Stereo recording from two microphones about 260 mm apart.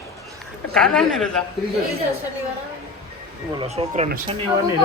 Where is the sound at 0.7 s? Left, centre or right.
Centre.